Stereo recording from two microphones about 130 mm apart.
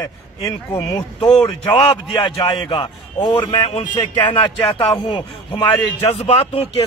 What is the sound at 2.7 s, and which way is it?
Speech, 40° left (ahead or behind).